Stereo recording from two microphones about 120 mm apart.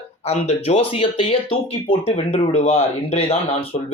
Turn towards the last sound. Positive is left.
turn(degrees=55)  # may be behind; listen again after turning